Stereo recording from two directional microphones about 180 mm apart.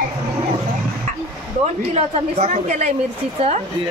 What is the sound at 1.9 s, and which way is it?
A woman's voice, 40° right (ahead or behind).